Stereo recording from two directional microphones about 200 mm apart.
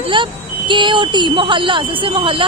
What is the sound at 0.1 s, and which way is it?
Speech, 25° right (ahead or behind).